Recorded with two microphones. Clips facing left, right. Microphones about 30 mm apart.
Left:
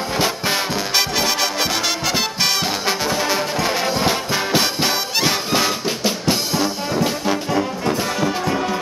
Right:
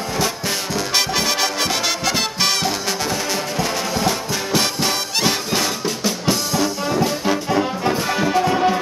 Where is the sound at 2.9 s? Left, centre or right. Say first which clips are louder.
Left 3 dB; centre.